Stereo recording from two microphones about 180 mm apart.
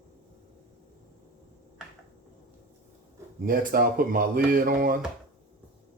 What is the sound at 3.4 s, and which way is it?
Speech, 50° right (ahead or behind).